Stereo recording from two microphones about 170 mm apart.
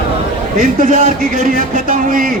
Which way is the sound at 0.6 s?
50° right (ahead or behind).